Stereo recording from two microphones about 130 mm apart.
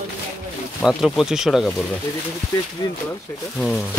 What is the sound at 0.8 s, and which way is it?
Speech, centre (ahead or behind).